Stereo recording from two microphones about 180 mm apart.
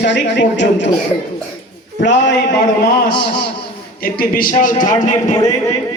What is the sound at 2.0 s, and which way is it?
Speech, 80° left.